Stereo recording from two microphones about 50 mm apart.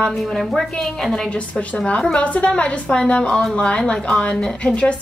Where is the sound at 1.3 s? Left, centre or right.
Left.